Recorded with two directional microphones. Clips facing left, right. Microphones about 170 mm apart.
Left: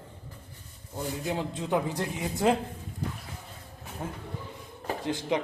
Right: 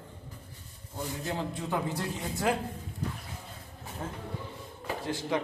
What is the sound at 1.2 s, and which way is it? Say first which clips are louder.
A man's voice: left 3 dB; 20° left (ahead or behind).